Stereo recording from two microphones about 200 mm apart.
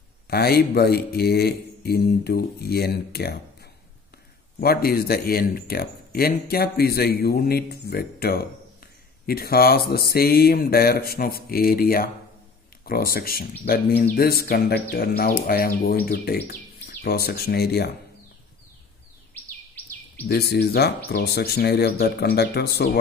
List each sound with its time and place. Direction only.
0.3 s speech: 50° left (ahead or behind)
4.6 s speech: 50° left (ahead or behind)
20.2 s speech: 50° left (ahead or behind)